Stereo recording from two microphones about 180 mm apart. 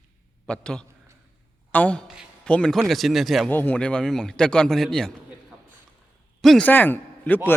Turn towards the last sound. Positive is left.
turn(degrees=10)  # may be behind; listen again after turning